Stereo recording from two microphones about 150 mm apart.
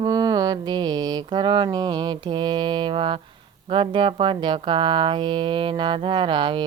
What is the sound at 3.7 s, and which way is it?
Speech, 35° right (ahead or behind).